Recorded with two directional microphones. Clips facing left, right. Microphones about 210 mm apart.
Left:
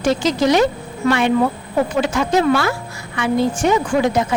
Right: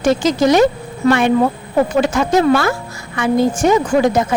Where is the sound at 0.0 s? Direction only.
50° right (ahead or behind).